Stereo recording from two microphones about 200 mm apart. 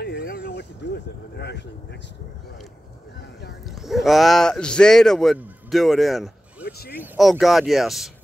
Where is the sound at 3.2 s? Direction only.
60° left (ahead or behind).